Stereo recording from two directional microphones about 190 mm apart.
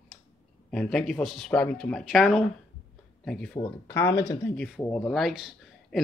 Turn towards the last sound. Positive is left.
turn(degrees=0)  # may be behind; listen again after turning